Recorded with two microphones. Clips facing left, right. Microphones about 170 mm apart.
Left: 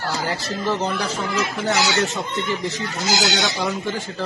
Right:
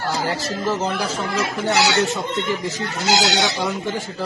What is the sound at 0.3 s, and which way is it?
Speech, centre (ahead or behind).